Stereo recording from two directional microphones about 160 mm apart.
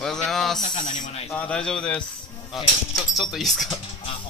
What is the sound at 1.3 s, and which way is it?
A man's voice, 5° left (ahead or behind).